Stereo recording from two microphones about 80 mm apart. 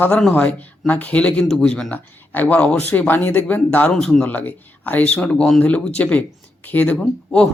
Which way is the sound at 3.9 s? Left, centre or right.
Centre.